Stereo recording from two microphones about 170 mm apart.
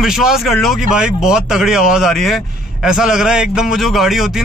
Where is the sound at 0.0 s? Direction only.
Centre (ahead or behind).